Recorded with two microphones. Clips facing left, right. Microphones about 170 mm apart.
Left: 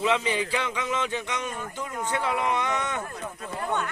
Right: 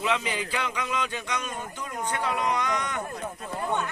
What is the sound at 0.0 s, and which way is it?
Speech, 30° left (ahead or behind).